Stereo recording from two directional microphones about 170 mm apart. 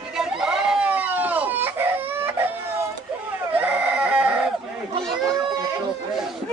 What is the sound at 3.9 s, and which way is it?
Chicken, 10° right (ahead or behind).